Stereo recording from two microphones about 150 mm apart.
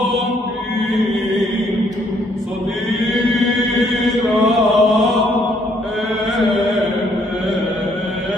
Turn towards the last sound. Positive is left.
turn(degrees=0)  # may be behind; listen again after turning